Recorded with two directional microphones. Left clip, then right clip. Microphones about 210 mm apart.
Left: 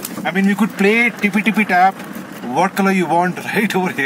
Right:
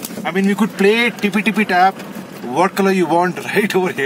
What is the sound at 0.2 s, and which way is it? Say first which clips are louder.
Speech: even; 10° right (ahead or behind).